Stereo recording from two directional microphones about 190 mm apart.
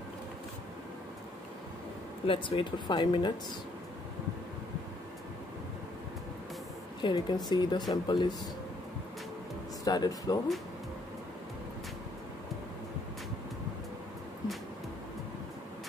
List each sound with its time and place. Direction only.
2.2 s speech: 30° left (ahead or behind)
7.0 s speech: 25° left (ahead or behind)
9.8 s speech: 20° left (ahead or behind)